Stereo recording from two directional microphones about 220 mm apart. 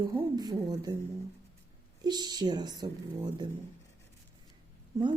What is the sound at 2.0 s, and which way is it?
Speech, 20° right (ahead or behind).